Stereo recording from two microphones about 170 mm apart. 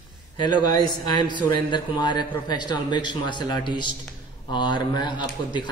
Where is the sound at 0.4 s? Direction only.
25° left (ahead or behind).